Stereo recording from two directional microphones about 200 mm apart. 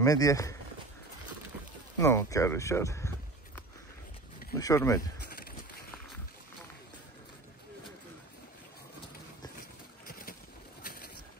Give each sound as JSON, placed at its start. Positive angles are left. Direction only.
{"t": 0.0, "sound": "speech", "side_deg": 15}
{"t": 2.0, "sound": "a sound", "side_deg": 15}
{"t": 4.6, "sound": "speech", "side_deg": 15}
{"t": 10.0, "sound": "boat", "side_deg": 45}